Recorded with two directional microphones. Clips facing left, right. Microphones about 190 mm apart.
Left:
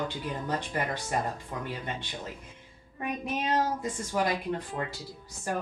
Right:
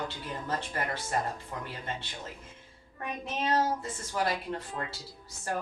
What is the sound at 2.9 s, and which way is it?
A woman's voice, 15° left (ahead or behind).